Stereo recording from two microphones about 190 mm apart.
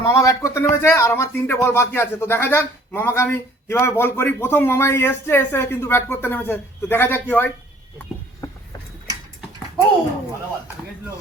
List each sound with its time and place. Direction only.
0.0 s speech: 15° left (ahead or behind)